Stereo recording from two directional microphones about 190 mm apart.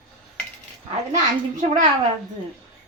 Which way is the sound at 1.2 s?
40° right (ahead or behind).